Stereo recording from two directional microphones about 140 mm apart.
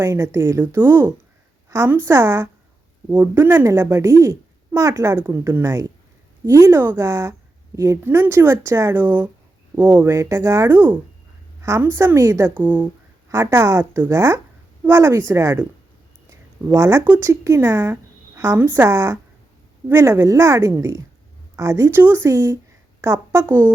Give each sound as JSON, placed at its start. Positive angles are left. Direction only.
{"t": 0.0, "sound": "a woman's voice", "side_deg": -20}